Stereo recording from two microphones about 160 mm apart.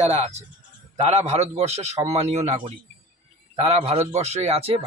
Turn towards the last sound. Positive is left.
turn(degrees=-40)  # may be behind; listen again after turning